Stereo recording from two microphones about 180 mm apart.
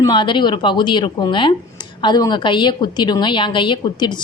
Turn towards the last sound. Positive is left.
turn(degrees=25)  # may be behind; listen again after turning